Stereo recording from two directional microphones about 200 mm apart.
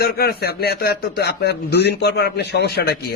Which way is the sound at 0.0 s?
50° left (ahead or behind).